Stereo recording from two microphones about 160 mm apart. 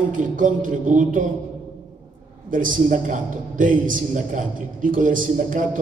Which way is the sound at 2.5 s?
55° right (ahead or behind).